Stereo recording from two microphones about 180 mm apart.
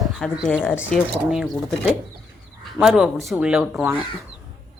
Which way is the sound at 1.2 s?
5° right (ahead or behind).